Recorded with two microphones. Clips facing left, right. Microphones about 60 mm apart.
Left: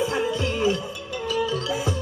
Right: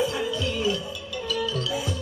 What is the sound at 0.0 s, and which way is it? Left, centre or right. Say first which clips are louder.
Music: left 2 dB; left.